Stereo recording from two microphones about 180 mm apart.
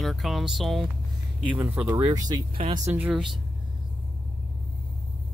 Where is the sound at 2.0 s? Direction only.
20° right (ahead or behind).